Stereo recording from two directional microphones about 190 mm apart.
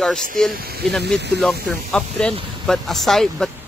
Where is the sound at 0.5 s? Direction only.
55° right (ahead or behind).